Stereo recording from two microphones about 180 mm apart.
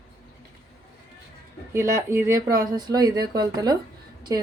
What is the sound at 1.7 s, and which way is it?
Speech, 15° right (ahead or behind).